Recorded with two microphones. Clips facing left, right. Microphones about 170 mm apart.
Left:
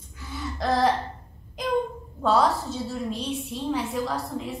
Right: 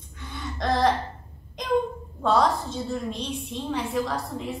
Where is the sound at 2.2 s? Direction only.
5° left (ahead or behind).